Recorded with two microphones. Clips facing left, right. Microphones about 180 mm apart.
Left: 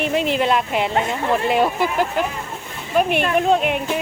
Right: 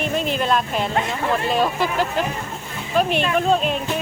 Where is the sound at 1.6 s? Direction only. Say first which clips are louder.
Left 2 dB; 15° left (ahead or behind).